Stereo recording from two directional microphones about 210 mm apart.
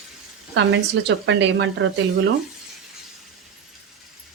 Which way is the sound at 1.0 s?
60° right (ahead or behind).